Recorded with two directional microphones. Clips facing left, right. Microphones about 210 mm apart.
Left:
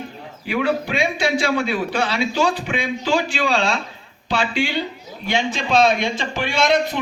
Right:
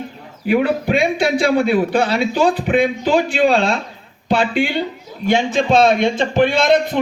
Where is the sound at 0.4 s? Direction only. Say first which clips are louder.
Right 5 dB; 50° right (ahead or behind).